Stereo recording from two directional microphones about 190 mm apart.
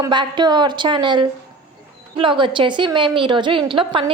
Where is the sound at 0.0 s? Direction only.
25° right (ahead or behind).